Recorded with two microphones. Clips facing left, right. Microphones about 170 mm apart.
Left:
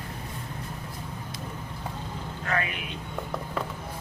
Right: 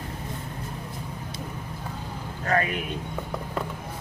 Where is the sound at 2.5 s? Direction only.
40° right (ahead or behind).